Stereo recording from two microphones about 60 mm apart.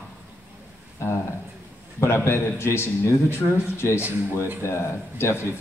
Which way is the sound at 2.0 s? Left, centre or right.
Left.